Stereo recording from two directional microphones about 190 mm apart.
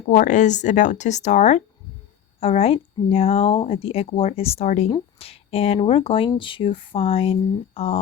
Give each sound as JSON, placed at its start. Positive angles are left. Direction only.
{"t": 0.1, "sound": "a woman's voice", "side_deg": 40}